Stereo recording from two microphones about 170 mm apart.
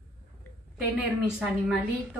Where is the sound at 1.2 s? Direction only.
5° right (ahead or behind).